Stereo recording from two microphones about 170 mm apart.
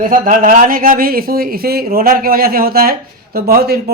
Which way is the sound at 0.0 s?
50° right (ahead or behind).